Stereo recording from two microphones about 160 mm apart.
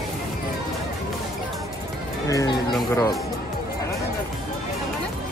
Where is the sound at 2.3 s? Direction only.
20° left (ahead or behind).